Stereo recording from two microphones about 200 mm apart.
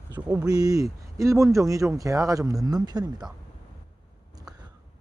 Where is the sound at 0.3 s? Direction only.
20° right (ahead or behind).